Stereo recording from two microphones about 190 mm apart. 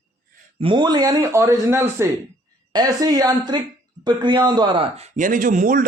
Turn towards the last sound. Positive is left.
turn(degrees=-45)  # may be behind; listen again after turning